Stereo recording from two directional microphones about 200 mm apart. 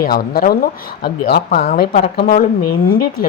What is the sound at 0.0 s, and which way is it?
A woman's voice, 50° left (ahead or behind).